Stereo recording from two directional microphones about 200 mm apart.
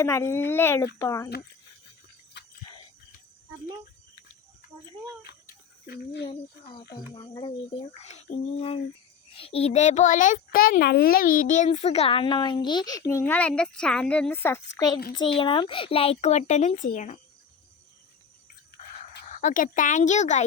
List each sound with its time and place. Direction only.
0.0 s speech: 15° left (ahead or behind)
5.2 s a sound: 50° left (ahead or behind)
6.3 s a child's voice: 25° left (ahead or behind)
9.3 s a child's voice: 30° left (ahead or behind)
15.1 s speech: 70° left (ahead or behind)
15.4 s speech: 25° left (ahead or behind)
19.3 s speech: 40° left (ahead or behind)